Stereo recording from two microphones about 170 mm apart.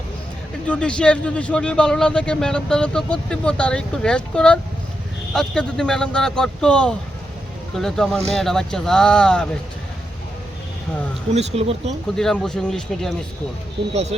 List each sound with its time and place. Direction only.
0.7 s a man's voice: 5° left (ahead or behind)
11.3 s speech: 40° right (ahead or behind)
12.1 s a man's voice: 5° left (ahead or behind)
13.9 s speech: 40° right (ahead or behind)